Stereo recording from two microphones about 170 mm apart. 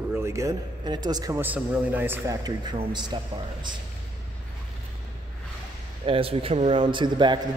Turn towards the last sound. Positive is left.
turn(degrees=-30)  # may be behind; listen again after turning